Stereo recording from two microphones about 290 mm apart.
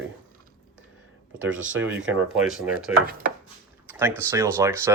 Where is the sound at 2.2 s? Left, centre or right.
Centre.